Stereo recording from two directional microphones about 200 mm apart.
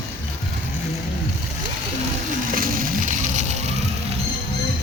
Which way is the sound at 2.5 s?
45° right (ahead or behind).